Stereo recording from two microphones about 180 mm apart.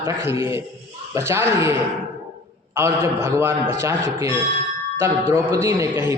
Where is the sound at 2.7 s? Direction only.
15° right (ahead or behind).